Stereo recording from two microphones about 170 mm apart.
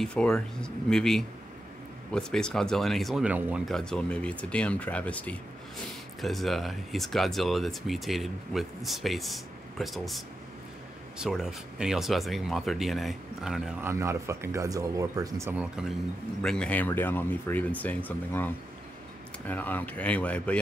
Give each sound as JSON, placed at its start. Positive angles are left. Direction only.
{"t": 0.0, "sound": "speech", "side_deg": 5}
{"t": 13.8, "sound": "speech", "side_deg": -15}
{"t": 16.4, "sound": "speech", "side_deg": 5}